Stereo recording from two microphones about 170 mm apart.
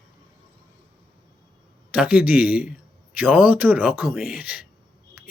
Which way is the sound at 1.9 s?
5° right (ahead or behind).